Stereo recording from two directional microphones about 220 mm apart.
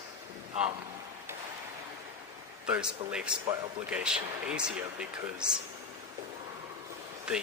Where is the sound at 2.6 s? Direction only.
5° right (ahead or behind).